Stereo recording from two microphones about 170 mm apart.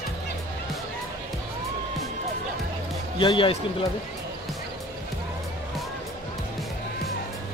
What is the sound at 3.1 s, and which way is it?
Speech, 30° left (ahead or behind).